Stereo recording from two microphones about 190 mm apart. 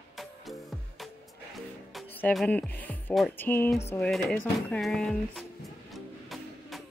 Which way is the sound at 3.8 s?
10° left (ahead or behind).